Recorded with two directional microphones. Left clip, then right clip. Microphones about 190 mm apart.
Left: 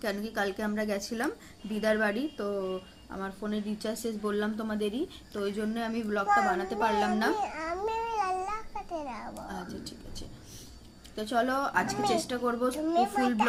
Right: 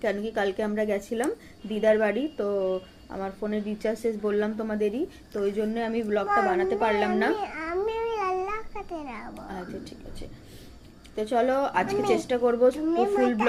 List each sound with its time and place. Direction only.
0.3 s a woman's voice: 20° left (ahead or behind)
5.3 s a sound: 30° left (ahead or behind)
11.1 s a woman's voice: 40° left (ahead or behind)
12.7 s a woman's voice: 35° left (ahead or behind)